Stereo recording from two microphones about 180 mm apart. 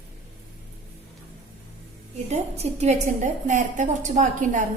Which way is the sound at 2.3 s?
35° right (ahead or behind).